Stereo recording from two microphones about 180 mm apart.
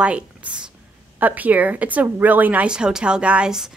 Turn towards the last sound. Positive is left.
turn(degrees=-5)  # may be behind; listen again after turning